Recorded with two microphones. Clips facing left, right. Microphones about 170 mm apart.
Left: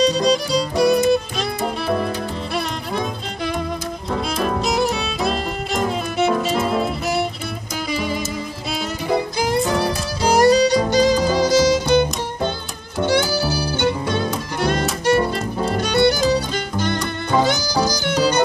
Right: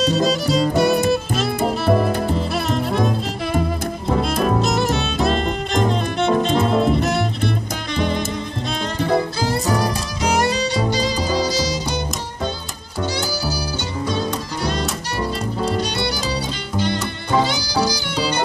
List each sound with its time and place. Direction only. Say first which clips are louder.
0.0 s music: left 1 dB; centre (ahead or behind)
4.2 s music: right 2 dB; centre (ahead or behind); by 12.0 s 55° left (ahead or behind)
13.3 s music: left 3 dB; 55° left (ahead or behind)